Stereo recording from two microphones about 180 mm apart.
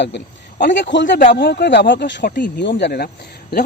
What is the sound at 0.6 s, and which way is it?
Speech, 80° left.